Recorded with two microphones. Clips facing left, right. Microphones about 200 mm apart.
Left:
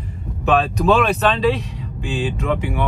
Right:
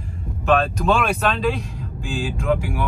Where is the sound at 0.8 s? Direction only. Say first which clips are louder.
Left 4 dB; centre (ahead or behind).